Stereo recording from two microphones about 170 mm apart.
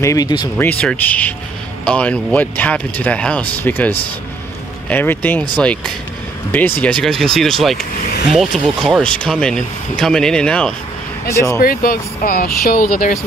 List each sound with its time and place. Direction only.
0.0 s speech: 20° left (ahead or behind)
0.6 s speech: 10° left (ahead or behind)
11.2 s speech: 15° left (ahead or behind)
11.6 s speech: 55° left (ahead or behind)